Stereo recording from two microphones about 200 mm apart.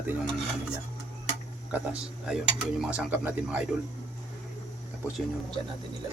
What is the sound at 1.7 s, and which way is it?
Speech, 5° right (ahead or behind).